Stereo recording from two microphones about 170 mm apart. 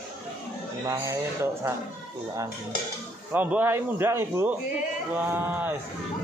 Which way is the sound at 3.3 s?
10° right (ahead or behind).